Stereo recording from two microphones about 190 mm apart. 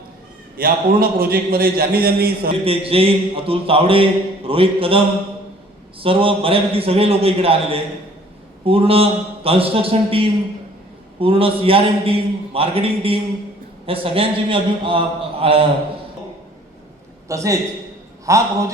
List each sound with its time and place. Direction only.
0.5 s a man's voice: 50° right (ahead or behind)
2.5 s a man's voice: 30° right (ahead or behind)
17.2 s a man's voice: 15° right (ahead or behind)